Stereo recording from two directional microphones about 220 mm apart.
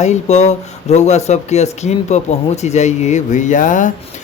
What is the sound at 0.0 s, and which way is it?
Speech, 30° left (ahead or behind).